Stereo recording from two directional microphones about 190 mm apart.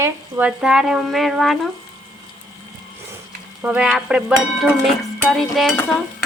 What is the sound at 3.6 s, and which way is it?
Speech, 5° right (ahead or behind).